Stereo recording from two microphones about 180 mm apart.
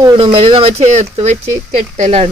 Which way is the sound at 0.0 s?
25° right (ahead or behind).